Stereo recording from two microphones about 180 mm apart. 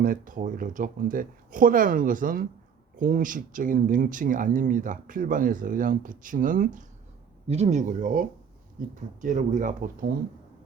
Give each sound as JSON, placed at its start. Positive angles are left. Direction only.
{"t": 0.0, "sound": "speech", "side_deg": -50}
{"t": 7.4, "sound": "speech", "side_deg": -35}